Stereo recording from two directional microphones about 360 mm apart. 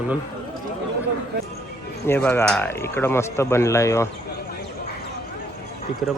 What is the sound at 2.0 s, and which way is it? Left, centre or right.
Speech, centre.